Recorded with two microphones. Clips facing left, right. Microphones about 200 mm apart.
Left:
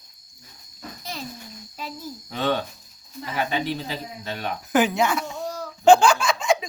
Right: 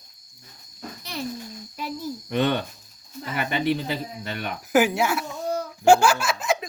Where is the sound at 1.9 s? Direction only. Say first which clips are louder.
Right 7 dB; 65° right (ahead or behind).